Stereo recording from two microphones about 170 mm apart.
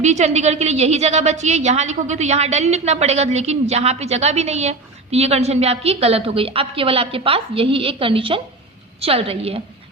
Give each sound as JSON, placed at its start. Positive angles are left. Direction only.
{"t": 0.0, "sound": "a woman's voice", "side_deg": -40}